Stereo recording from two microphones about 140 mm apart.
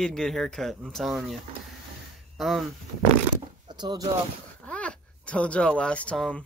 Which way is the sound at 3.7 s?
30° right (ahead or behind).